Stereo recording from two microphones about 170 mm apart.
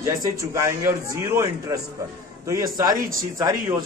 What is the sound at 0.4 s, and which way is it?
A man's voice, 15° right (ahead or behind).